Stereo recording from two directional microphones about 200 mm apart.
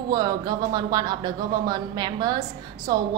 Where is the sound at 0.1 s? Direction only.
20° right (ahead or behind).